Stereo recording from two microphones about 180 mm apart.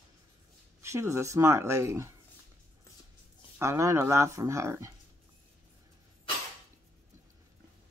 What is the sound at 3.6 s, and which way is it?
Speech, 15° right (ahead or behind).